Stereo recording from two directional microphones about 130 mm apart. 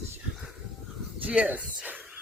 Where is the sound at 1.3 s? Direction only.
10° right (ahead or behind).